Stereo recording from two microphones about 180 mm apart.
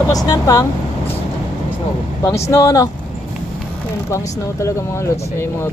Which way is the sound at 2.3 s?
15° left (ahead or behind).